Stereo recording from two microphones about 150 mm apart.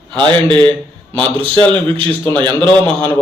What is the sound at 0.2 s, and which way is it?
A man's voice, 10° left (ahead or behind).